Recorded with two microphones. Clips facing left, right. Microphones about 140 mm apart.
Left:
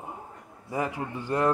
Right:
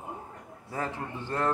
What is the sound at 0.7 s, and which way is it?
Speech, 15° left (ahead or behind).